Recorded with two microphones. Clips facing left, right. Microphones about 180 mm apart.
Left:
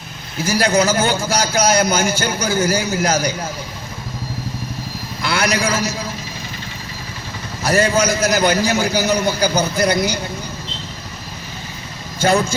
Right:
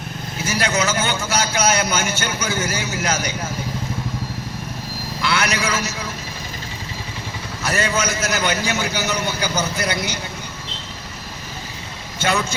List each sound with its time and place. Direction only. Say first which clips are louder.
0.4 s a man's voice: left 6 dB; 35° left (ahead or behind)
5.2 s a man's voice: left 3 dB; 35° left (ahead or behind)
7.6 s a man's voice: left 6 dB; 35° left (ahead or behind)